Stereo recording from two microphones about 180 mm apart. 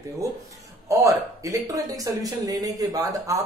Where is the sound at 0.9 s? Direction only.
15° right (ahead or behind).